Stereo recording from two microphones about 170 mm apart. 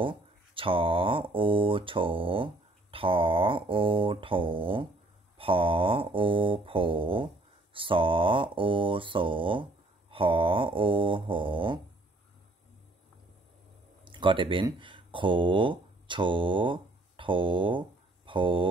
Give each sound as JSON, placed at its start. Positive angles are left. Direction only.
{"t": 0.0, "sound": "speech", "side_deg": -30}
{"t": 14.0, "sound": "speech", "side_deg": -30}